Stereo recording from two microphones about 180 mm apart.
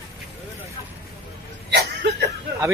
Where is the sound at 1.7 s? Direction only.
70° right (ahead or behind).